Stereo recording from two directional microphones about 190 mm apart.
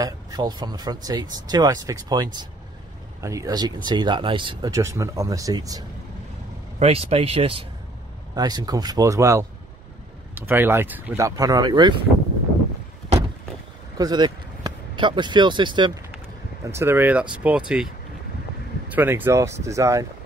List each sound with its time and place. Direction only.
0.0 s speech: 20° right (ahead or behind)
6.8 s speech: 30° right (ahead or behind)
13.9 s speech: 20° right (ahead or behind)
16.6 s speech: 15° right (ahead or behind)
18.9 s speech: 10° right (ahead or behind)